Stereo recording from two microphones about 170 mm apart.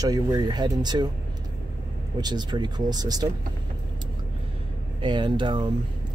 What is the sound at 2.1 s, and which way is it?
Speech, 25° right (ahead or behind).